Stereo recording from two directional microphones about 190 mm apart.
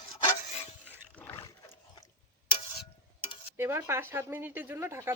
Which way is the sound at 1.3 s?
20° left (ahead or behind).